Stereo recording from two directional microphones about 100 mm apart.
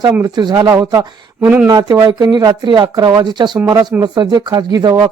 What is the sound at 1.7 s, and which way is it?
Speech, 40° right (ahead or behind).